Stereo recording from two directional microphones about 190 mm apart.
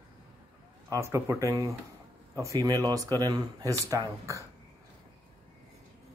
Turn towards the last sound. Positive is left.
turn(degrees=-15)  # may be behind; listen again after turning